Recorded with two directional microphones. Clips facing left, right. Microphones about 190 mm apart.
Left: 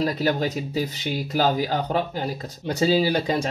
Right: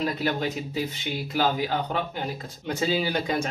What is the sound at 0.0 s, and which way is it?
Speech, 40° left (ahead or behind).